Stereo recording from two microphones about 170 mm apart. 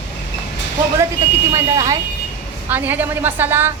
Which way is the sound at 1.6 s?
20° right (ahead or behind).